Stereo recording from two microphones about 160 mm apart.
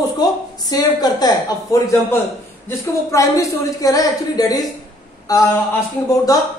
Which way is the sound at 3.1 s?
20° left (ahead or behind).